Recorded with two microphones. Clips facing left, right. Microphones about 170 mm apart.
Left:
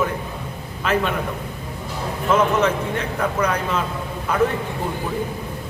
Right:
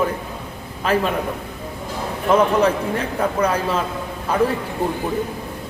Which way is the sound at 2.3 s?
35° right (ahead or behind).